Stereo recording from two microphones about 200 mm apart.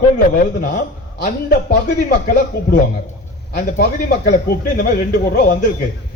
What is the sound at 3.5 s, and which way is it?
A man's voice, 45° left (ahead or behind).